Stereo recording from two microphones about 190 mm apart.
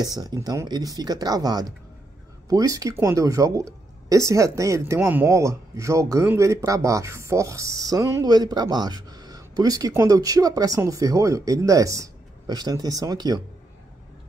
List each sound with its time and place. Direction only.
0.0 s speech: 20° right (ahead or behind)